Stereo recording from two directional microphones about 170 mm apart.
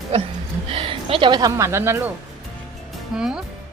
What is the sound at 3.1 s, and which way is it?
Speech, 5° right (ahead or behind).